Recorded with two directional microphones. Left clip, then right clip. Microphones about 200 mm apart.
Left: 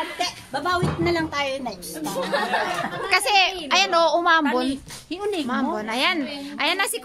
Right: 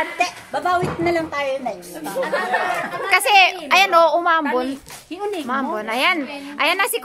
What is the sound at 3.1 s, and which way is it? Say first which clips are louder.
A woman's voice: right 5 dB; 5° left (ahead or behind).